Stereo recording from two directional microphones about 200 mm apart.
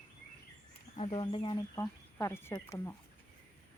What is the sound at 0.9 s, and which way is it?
Speech, 30° left (ahead or behind).